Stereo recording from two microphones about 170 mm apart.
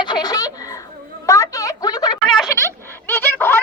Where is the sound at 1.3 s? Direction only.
20° left (ahead or behind).